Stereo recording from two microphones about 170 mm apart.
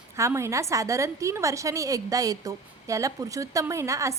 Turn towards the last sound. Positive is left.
turn(degrees=-20)  # may be behind; listen again after turning